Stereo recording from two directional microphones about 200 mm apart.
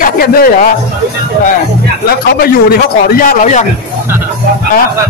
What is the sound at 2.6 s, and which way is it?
Speech, 45° left (ahead or behind).